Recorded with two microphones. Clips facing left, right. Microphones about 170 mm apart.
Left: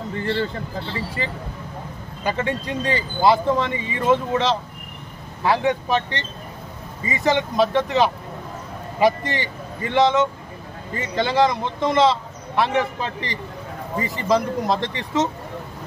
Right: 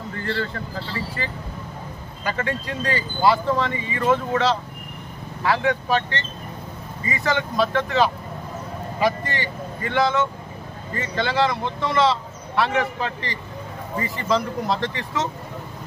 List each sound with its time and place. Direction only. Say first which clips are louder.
0.1 s speech: left 3 dB; 20° left (ahead or behind)
2.2 s speech: left 2 dB; 20° left (ahead or behind)